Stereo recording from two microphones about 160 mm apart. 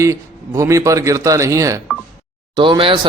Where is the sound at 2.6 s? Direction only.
30° right (ahead or behind).